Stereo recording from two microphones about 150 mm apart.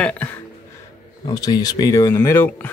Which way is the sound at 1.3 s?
25° left (ahead or behind).